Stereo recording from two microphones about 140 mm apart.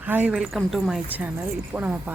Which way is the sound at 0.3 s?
Centre (ahead or behind).